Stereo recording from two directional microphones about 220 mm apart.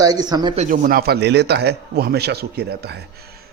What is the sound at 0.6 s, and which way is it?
A man's voice, 40° right (ahead or behind).